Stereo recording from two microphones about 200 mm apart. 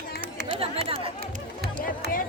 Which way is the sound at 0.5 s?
30° right (ahead or behind).